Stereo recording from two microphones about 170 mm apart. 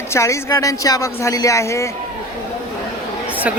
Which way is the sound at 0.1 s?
15° left (ahead or behind).